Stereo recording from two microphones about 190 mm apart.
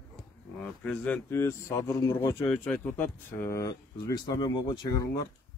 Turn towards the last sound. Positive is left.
turn(degrees=20)  # may be behind; listen again after turning